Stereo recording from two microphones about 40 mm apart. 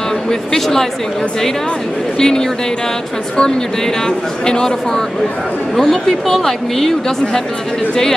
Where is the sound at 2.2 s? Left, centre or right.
Centre.